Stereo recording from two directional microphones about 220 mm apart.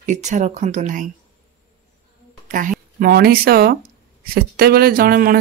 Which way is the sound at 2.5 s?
35° right (ahead or behind).